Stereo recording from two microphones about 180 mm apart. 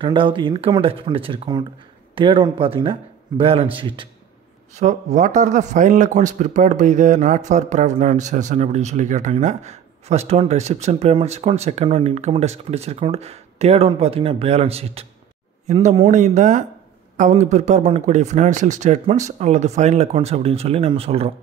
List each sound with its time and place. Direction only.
0.0 s speech: 30° right (ahead or behind)
4.7 s speech: 40° right (ahead or behind)